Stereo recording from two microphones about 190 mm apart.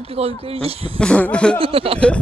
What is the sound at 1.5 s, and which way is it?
Speech, 30° right (ahead or behind).